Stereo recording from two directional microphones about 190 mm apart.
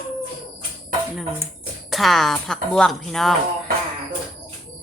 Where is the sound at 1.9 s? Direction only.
Centre (ahead or behind).